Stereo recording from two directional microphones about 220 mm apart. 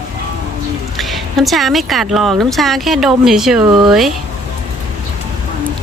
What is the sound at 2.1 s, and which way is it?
A child's voice, centre (ahead or behind).